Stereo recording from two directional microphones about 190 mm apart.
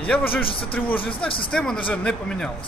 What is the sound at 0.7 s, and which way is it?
Speech, 10° left (ahead or behind).